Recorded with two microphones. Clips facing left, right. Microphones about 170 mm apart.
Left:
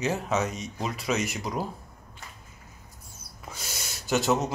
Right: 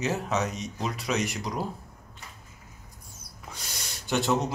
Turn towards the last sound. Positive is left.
turn(degrees=0)  # may be behind; listen again after turning